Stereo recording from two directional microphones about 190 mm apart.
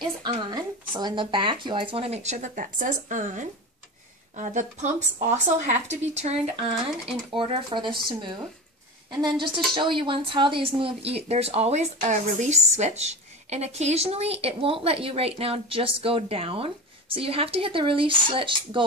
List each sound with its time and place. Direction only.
0.0 s speech: 20° right (ahead or behind)